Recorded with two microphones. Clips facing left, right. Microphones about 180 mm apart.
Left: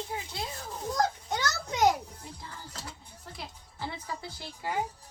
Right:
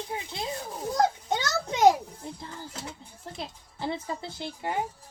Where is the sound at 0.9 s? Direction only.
25° right (ahead or behind).